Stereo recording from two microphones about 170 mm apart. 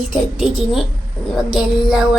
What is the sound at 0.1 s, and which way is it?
Speech, centre (ahead or behind).